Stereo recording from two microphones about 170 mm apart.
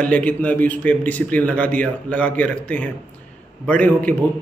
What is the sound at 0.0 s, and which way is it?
A man's voice, 10° left (ahead or behind).